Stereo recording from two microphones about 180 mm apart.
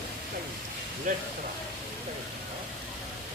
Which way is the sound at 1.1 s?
45° right (ahead or behind).